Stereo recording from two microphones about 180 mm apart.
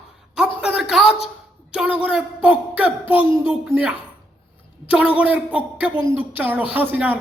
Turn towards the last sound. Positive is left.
turn(degrees=-10)  # may be behind; listen again after turning